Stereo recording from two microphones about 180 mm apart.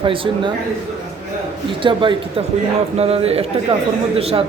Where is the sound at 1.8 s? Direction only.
30° right (ahead or behind).